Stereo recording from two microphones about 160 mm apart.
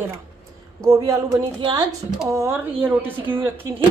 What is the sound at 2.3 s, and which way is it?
Speech, 20° right (ahead or behind).